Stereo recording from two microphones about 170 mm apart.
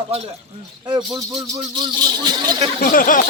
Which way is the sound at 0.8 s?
25° right (ahead or behind).